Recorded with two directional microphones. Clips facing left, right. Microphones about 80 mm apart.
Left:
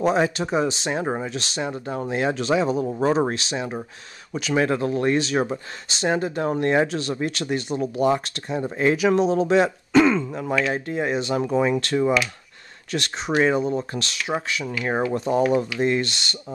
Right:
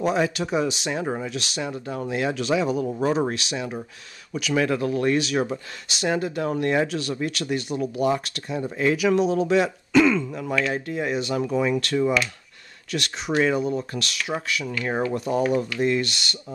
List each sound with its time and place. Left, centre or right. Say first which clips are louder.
0.0 s speech: left 2 dB; left